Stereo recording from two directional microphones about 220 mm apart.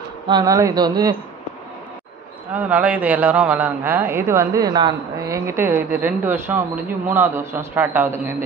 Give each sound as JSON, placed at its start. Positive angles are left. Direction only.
{"t": 0.3, "sound": "a man's voice", "side_deg": -15}
{"t": 2.5, "sound": "a man's voice", "side_deg": -5}